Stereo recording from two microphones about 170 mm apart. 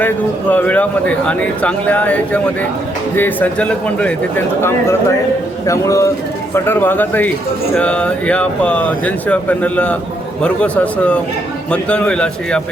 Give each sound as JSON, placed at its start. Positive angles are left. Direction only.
{"t": 0.5, "sound": "speech", "side_deg": 10}